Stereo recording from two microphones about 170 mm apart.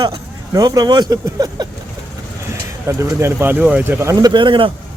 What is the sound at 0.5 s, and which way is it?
Speech, 20° right (ahead or behind).